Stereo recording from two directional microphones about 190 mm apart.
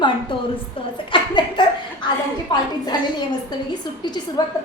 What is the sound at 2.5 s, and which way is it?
Speech, 25° left (ahead or behind).